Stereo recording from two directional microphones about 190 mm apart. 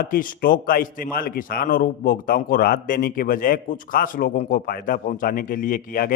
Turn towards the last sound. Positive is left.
turn(degrees=50)  # may be behind; listen again after turning